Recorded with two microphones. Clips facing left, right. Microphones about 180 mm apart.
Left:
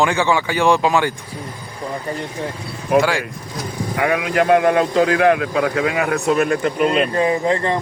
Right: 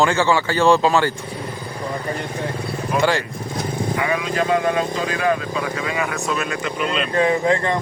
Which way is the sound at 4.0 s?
60° left (ahead or behind).